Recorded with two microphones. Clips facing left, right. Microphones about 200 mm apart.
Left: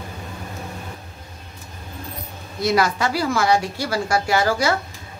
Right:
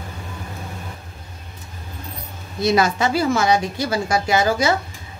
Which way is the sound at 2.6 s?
20° right (ahead or behind).